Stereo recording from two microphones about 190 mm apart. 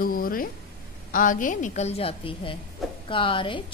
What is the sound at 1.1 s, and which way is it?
A woman's voice, 45° left (ahead or behind).